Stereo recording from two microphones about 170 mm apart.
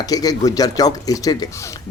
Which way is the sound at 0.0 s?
20° left (ahead or behind).